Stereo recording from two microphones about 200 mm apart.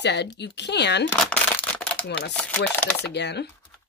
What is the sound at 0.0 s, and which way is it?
Speech, 60° left (ahead or behind).